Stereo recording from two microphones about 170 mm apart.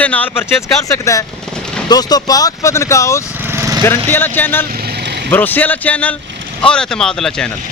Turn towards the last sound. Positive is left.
turn(degrees=5)  # may be behind; listen again after turning